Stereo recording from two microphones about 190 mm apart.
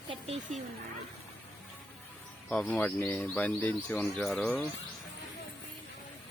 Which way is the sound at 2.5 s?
5° left (ahead or behind).